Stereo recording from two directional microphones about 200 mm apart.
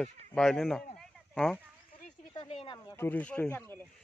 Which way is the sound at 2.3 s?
25° left (ahead or behind).